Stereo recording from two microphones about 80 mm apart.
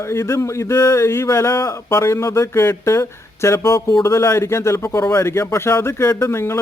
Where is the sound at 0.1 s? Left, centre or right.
Left.